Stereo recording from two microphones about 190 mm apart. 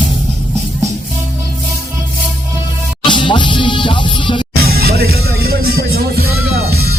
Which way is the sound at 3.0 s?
25° left (ahead or behind).